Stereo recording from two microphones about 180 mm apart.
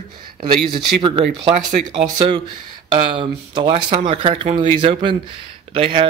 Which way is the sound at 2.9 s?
25° right (ahead or behind).